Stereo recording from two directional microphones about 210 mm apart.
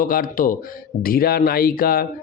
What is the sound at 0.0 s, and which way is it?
Speech, 40° left (ahead or behind).